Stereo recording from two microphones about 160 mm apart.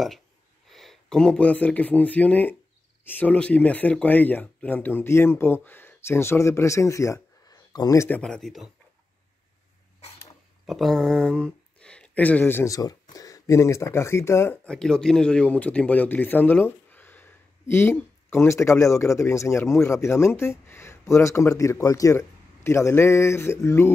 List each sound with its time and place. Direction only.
0.7 s speech: centre (ahead or behind); by 8.2 s 20° left (ahead or behind)
8.2 s speech: 5° left (ahead or behind)
10.7 s speech: centre (ahead or behind); by 23.9 s 15° left (ahead or behind)